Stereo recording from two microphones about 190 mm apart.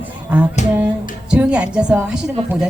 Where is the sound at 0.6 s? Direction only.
40° left (ahead or behind).